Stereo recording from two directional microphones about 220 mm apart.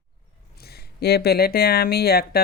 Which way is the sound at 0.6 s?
45° left (ahead or behind).